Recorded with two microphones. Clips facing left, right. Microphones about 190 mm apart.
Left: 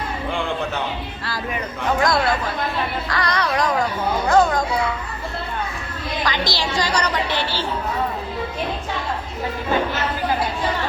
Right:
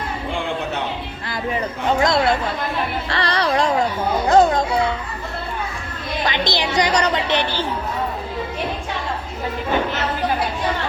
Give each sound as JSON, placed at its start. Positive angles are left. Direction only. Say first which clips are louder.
{"t": 2.0, "sound": "a woman's voice", "louder": "right 2 dB", "side_deg": -25}
{"t": 3.1, "sound": "music", "louder": "right 3 dB", "side_deg": -30}
{"t": 4.3, "sound": "children playing", "louder": "right 3 dB", "side_deg": -25}
{"t": 6.2, "sound": "a woman's voice", "louder": "right 2 dB", "side_deg": -20}